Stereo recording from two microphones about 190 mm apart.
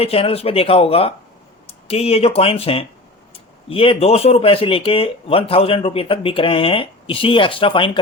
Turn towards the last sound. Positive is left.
turn(degrees=25)  # may be behind; listen again after turning